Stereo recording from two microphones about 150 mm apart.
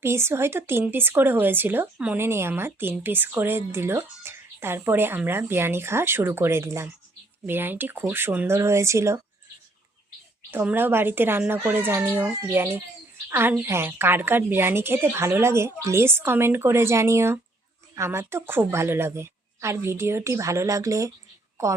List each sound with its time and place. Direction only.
0.0 s speech: 15° right (ahead or behind)
10.5 s speech: 10° right (ahead or behind)